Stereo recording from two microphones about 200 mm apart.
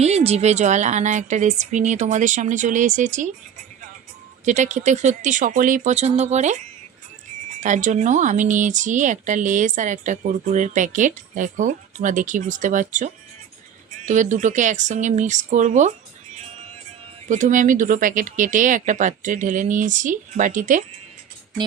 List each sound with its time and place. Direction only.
0.0 s speech: 30° right (ahead or behind)
4.4 s speech: 35° right (ahead or behind)
7.6 s speech: 40° right (ahead or behind)
17.2 s speech: 40° right (ahead or behind)